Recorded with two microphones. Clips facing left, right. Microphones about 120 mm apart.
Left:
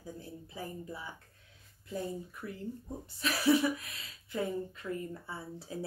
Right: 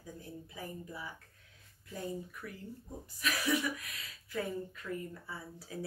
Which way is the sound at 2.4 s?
25° left (ahead or behind).